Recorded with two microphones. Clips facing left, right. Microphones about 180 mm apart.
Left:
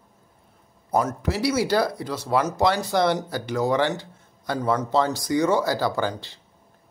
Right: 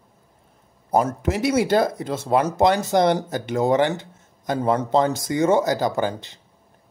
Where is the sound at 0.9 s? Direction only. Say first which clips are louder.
Right 3 dB; 25° right (ahead or behind).